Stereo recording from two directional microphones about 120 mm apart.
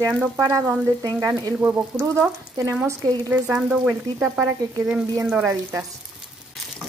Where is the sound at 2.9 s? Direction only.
25° right (ahead or behind).